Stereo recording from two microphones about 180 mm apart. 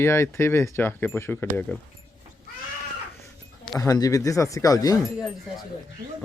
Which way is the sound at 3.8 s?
20° left (ahead or behind).